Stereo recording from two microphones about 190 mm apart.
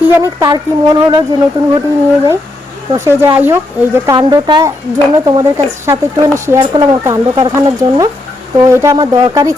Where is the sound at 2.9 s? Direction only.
15° right (ahead or behind).